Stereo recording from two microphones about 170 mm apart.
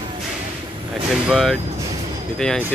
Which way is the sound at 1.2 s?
Centre (ahead or behind).